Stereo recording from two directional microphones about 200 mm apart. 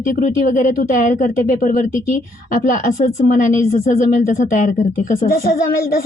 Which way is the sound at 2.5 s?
45° left (ahead or behind).